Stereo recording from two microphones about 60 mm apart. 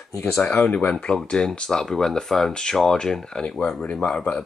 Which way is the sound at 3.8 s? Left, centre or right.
Left.